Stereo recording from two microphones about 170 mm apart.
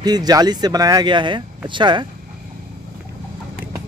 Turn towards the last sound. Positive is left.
turn(degrees=-25)  # may be behind; listen again after turning